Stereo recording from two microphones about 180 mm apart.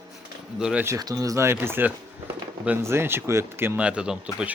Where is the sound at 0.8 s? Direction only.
20° right (ahead or behind).